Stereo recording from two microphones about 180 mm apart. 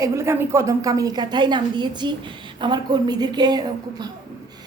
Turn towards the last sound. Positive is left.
turn(degrees=-25)  # may be behind; listen again after turning